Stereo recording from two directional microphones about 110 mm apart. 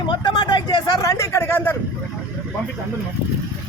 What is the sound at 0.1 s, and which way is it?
Speech, 45° left (ahead or behind).